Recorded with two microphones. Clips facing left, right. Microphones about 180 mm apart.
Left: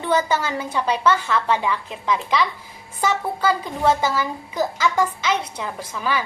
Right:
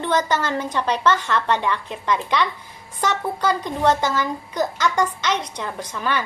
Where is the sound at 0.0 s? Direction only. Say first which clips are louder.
Even; 10° left (ahead or behind).